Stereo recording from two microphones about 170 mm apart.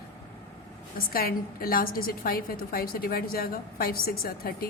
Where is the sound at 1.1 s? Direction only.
60° left (ahead or behind).